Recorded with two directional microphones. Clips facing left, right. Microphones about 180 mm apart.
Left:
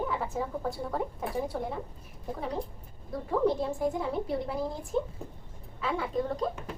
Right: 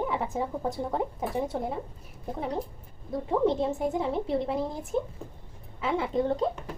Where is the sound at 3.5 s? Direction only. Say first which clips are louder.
Right 2 dB; 25° right (ahead or behind).